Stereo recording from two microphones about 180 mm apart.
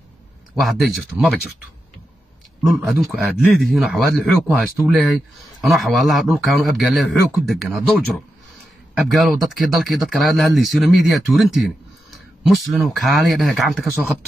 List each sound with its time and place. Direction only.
0.6 s speech: centre (ahead or behind)
2.6 s speech: 5° right (ahead or behind)
9.1 s speech: centre (ahead or behind)
12.7 s speech: centre (ahead or behind)